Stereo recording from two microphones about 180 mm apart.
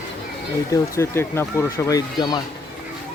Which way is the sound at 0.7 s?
15° left (ahead or behind).